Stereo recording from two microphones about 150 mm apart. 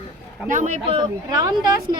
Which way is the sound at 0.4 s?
55° right (ahead or behind).